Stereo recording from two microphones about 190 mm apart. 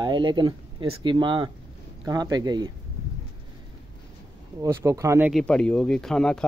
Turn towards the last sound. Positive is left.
turn(degrees=5)  # may be behind; listen again after turning